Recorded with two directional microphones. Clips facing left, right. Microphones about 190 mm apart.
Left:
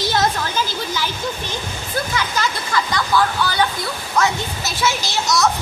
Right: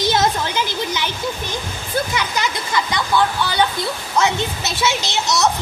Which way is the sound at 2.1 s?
15° right (ahead or behind).